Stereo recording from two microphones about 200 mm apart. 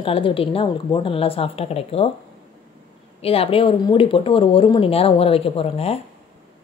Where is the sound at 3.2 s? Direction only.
30° left (ahead or behind).